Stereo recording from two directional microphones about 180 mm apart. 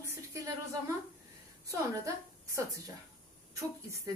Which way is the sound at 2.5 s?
20° right (ahead or behind).